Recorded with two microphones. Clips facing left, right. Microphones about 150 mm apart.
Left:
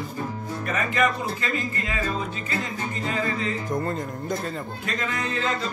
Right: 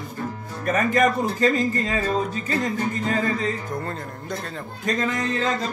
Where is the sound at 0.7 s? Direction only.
45° right (ahead or behind).